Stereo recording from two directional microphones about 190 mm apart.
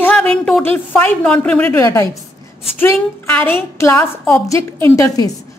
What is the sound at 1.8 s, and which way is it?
Speech, 15° left (ahead or behind).